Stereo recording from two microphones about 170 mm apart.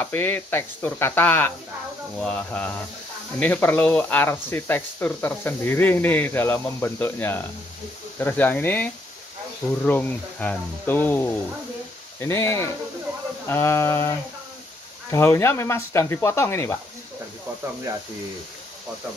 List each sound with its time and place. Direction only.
0.0 s speech: 10° left (ahead or behind)